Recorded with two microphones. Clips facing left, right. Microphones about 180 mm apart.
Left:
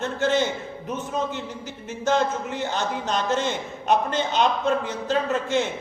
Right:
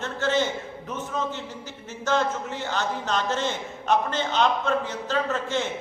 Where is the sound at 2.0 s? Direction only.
15° left (ahead or behind).